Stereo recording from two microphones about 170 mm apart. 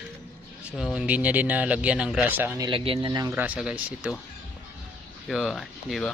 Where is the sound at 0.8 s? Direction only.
5° right (ahead or behind).